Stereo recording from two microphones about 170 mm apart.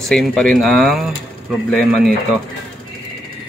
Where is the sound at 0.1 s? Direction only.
Centre (ahead or behind).